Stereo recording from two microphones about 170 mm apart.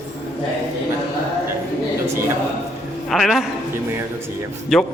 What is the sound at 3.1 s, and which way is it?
Speech, centre (ahead or behind).